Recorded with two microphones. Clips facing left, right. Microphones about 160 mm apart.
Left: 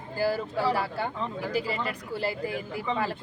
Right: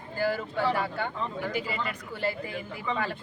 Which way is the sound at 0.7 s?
35° left (ahead or behind).